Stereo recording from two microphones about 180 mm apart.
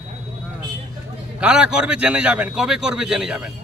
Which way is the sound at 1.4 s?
5° right (ahead or behind).